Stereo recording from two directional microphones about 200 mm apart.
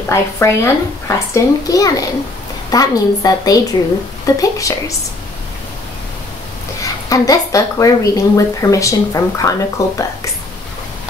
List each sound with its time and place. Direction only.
0.1 s speech: 15° left (ahead or behind)
7.1 s speech: 15° left (ahead or behind)